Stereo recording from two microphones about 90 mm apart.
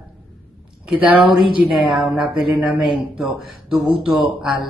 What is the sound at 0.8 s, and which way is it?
Speech, 15° right (ahead or behind).